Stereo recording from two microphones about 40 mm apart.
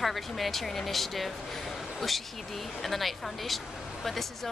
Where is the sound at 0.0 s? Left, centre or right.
Centre.